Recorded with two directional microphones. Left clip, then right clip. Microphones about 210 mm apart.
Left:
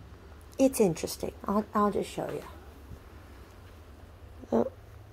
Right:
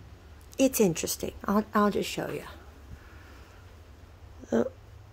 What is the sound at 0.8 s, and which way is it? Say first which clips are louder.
Speech: right 1 dB; 20° right (ahead or behind).